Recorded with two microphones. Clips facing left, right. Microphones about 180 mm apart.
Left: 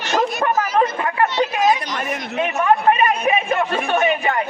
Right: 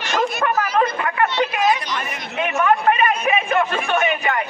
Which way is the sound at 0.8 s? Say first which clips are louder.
Left 1 dB; 30° left (ahead or behind).